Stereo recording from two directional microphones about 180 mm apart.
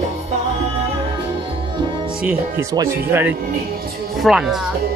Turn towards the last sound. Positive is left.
turn(degrees=0)  # may be behind; listen again after turning